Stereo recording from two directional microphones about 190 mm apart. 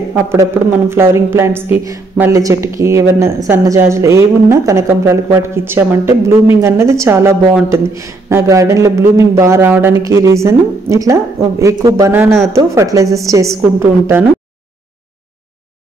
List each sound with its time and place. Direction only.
0.1 s a woman's voice: 15° right (ahead or behind)